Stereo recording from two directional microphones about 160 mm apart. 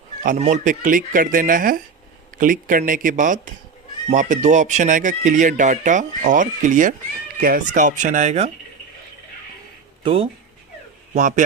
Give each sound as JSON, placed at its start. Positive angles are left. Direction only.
{"t": 0.2, "sound": "speech", "side_deg": -50}
{"t": 10.0, "sound": "speech", "side_deg": -35}
{"t": 11.1, "sound": "speech", "side_deg": -50}